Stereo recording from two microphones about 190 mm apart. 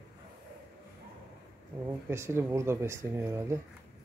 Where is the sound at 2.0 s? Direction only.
15° right (ahead or behind).